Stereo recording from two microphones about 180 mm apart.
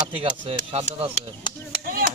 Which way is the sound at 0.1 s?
30° right (ahead or behind).